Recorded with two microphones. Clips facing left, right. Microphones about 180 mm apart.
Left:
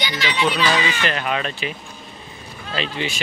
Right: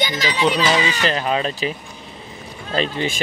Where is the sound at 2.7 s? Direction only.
45° right (ahead or behind).